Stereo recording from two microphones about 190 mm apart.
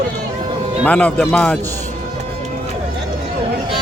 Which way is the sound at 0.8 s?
5° left (ahead or behind).